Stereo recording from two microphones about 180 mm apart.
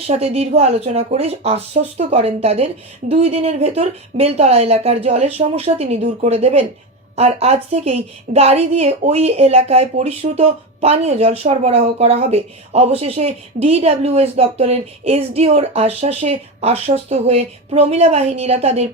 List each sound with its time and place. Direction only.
0.1 s a woman's voice: 35° right (ahead or behind)